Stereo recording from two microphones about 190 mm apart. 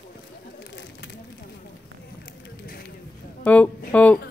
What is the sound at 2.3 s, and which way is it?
Run, 60° left (ahead or behind).